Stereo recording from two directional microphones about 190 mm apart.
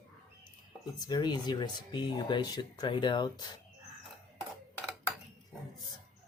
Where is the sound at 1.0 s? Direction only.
20° left (ahead or behind).